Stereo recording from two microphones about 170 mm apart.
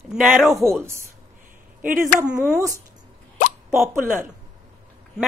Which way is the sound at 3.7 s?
15° right (ahead or behind).